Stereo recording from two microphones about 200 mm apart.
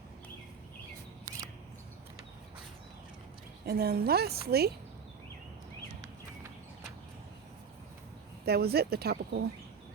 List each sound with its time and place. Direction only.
1.2 s scissors: 15° right (ahead or behind)
3.7 s a woman's voice: 50° right (ahead or behind)
8.4 s a woman's voice: 50° right (ahead or behind)